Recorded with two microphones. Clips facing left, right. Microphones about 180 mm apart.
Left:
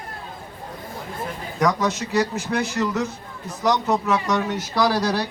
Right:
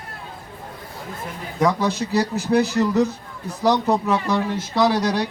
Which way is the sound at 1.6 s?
30° right (ahead or behind).